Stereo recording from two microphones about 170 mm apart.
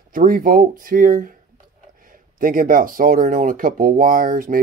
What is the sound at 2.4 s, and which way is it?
Speech, 55° right (ahead or behind).